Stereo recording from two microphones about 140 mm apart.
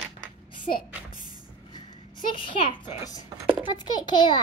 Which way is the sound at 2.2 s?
35° left (ahead or behind).